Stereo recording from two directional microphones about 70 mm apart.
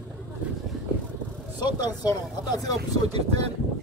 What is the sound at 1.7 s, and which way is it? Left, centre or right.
Speech, left.